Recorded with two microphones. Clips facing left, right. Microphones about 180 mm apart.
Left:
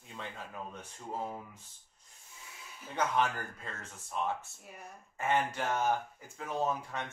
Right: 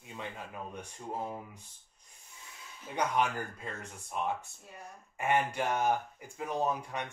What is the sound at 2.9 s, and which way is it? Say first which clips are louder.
Speech: right 1 dB; 15° right (ahead or behind).